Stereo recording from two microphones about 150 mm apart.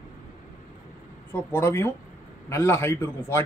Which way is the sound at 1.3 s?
15° left (ahead or behind).